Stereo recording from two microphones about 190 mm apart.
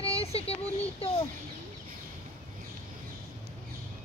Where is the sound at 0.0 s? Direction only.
30° left (ahead or behind).